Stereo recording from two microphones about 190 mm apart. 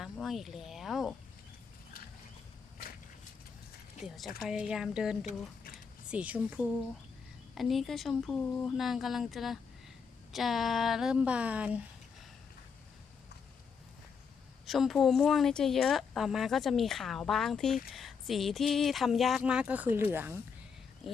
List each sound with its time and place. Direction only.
0.0 s a sound: centre (ahead or behind)
4.0 s speech: centre (ahead or behind)
5.2 s speech: 50° left (ahead or behind)
6.1 s speech: 5° right (ahead or behind)
14.7 s speech: centre (ahead or behind)